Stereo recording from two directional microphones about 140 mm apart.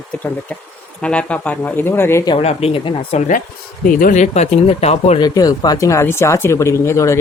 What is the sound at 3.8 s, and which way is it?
Speech, 75° left (ahead or behind).